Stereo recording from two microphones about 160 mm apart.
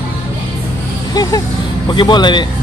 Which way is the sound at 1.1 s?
25° left (ahead or behind).